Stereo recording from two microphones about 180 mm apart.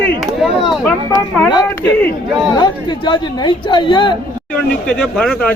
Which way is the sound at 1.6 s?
10° left (ahead or behind).